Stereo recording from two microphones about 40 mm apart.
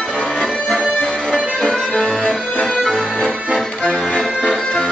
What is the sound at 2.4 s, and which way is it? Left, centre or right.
Accordion, left.